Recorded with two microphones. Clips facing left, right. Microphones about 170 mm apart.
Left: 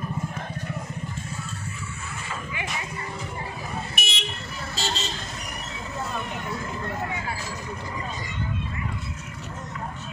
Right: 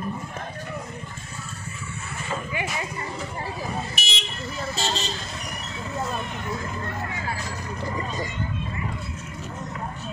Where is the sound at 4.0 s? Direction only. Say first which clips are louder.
Even; 55° left (ahead or behind).